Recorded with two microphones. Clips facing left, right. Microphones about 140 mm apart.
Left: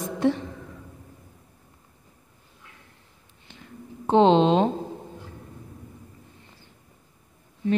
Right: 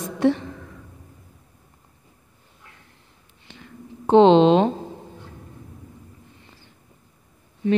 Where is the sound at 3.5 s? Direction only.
80° right.